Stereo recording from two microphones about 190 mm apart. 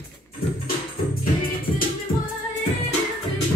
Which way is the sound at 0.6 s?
50° left (ahead or behind).